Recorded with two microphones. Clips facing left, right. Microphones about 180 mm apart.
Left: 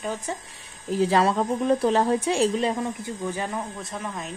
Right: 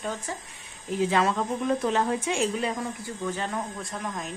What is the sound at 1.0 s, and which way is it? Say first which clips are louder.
A woman's voice: left 3 dB; 35° left (ahead or behind).